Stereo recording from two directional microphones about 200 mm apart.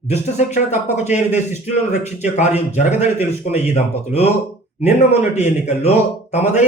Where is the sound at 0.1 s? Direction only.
35° left (ahead or behind).